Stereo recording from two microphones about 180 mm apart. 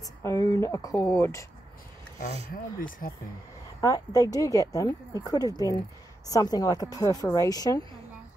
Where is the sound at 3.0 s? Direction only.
50° left (ahead or behind).